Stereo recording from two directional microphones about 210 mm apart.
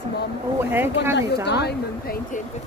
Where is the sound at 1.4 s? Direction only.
50° left (ahead or behind).